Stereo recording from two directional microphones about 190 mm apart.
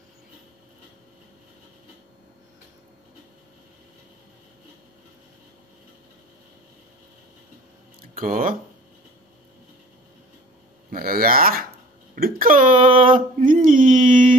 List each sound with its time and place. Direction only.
8.0 s speech: 45° right (ahead or behind)
10.9 s speech: 50° right (ahead or behind)
12.2 s a sound: 50° right (ahead or behind)